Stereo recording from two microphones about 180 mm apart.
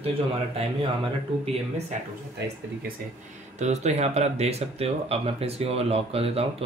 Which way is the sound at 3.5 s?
40° right (ahead or behind).